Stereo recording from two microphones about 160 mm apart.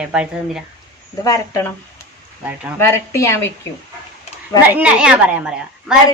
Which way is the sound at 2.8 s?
15° left (ahead or behind).